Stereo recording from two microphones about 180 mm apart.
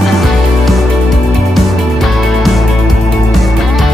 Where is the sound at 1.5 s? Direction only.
Centre (ahead or behind).